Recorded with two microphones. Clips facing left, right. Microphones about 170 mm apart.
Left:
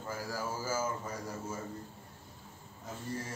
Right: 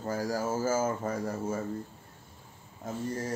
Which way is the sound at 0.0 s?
40° right (ahead or behind).